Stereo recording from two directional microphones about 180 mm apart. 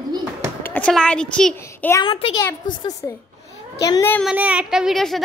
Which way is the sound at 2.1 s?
30° left (ahead or behind).